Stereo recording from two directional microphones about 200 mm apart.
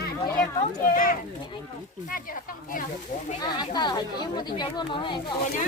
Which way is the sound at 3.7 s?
20° left (ahead or behind).